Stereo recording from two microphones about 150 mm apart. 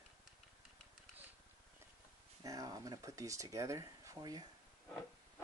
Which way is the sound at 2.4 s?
25° right (ahead or behind).